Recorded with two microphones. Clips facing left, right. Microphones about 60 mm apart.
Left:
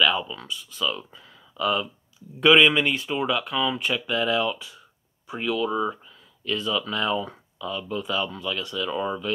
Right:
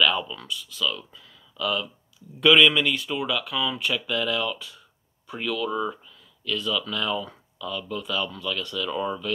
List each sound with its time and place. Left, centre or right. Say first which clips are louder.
0.0 s a sound: left 1 dB; centre
0.5 s speech: even; left
6.4 s speech: left 1 dB; left